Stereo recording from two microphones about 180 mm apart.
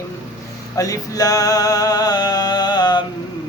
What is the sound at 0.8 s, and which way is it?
Music, 20° left (ahead or behind).